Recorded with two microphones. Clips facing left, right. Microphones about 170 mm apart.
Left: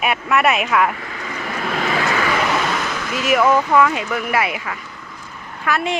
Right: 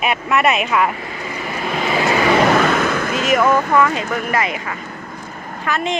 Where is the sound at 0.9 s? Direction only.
20° right (ahead or behind).